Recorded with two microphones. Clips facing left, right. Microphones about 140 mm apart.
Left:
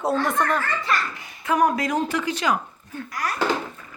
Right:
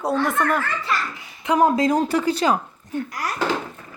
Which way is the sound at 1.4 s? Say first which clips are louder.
Right 3 dB; 25° right (ahead or behind).